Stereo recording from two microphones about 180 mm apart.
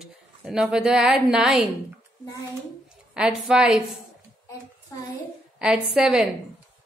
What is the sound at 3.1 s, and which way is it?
Speech, 5° right (ahead or behind).